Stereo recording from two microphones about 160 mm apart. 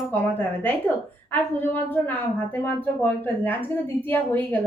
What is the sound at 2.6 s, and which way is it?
A woman's voice, 10° left (ahead or behind).